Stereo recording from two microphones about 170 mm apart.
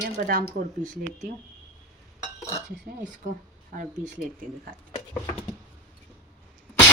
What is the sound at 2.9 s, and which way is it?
Speech, 65° right (ahead or behind).